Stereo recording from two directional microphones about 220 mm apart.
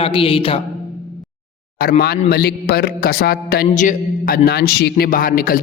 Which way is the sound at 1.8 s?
45° left (ahead or behind).